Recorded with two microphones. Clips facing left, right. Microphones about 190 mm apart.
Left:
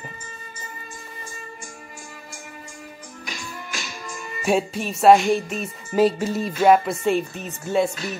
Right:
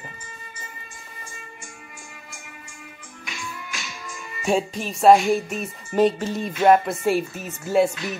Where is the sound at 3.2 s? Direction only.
40° left (ahead or behind).